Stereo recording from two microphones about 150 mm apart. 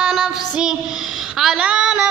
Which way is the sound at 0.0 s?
5° right (ahead or behind).